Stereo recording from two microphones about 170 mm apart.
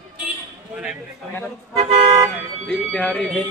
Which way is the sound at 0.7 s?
5° right (ahead or behind).